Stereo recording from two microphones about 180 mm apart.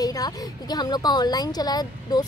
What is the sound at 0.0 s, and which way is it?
A woman's voice, 20° left (ahead or behind).